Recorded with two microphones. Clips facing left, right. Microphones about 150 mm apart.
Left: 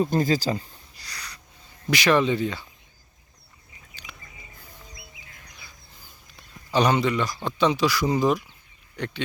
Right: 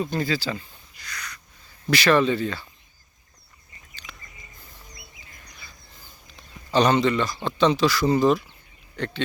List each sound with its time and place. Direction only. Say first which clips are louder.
0.0 s a sound: left 4 dB; 40° left (ahead or behind)
1.9 s speech: right 1 dB; 15° left (ahead or behind)
6.7 s speech: right 2 dB; 10° left (ahead or behind)